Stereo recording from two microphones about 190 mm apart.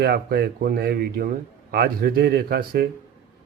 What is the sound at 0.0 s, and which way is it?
A man's voice, 55° right (ahead or behind).